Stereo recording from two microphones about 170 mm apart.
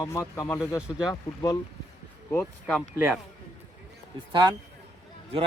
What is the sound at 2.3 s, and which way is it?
Speech, 10° left (ahead or behind).